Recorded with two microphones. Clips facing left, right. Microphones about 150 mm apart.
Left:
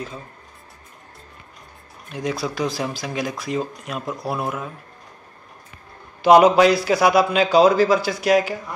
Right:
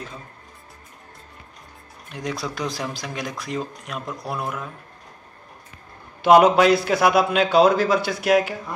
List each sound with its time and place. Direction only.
2.1 s speech: 5° left (ahead or behind)
6.2 s speech: centre (ahead or behind)